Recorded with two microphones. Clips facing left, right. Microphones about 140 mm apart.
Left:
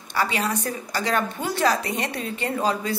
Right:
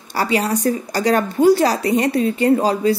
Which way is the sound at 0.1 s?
40° right (ahead or behind).